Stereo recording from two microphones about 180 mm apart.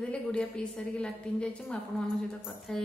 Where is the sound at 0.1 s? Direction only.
10° left (ahead or behind).